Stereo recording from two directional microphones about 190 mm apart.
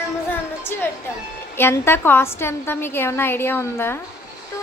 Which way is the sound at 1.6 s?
10° left (ahead or behind).